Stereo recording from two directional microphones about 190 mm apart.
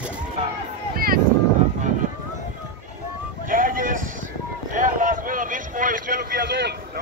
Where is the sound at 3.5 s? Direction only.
45° right (ahead or behind).